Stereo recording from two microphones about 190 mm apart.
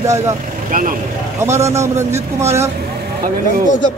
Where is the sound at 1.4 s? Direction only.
15° right (ahead or behind).